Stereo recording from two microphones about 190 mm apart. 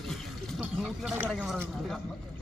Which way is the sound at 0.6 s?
Centre (ahead or behind).